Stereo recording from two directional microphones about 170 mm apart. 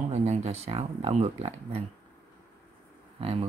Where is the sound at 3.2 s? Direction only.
35° right (ahead or behind).